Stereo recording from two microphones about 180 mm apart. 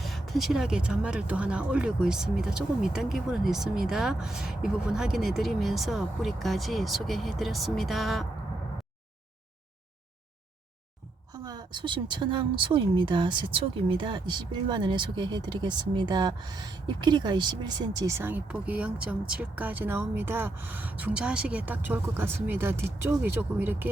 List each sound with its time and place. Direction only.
0.0 s speech: centre (ahead or behind)
11.4 s speech: 25° right (ahead or behind)